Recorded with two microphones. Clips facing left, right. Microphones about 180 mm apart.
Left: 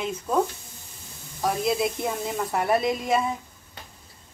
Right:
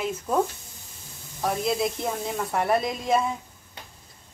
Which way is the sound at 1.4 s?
Centre (ahead or behind).